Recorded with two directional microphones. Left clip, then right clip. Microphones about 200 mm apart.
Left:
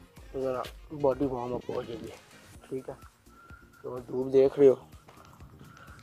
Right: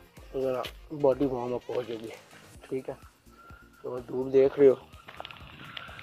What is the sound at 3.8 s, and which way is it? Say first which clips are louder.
Speech: right 1 dB; 15° left (ahead or behind).